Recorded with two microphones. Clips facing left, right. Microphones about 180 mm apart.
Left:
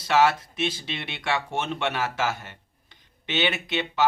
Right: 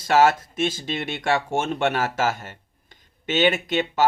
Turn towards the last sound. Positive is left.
turn(degrees=-45)  # may be behind; listen again after turning